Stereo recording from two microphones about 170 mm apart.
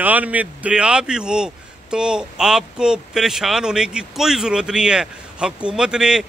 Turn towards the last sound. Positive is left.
turn(degrees=-5)  # may be behind; listen again after turning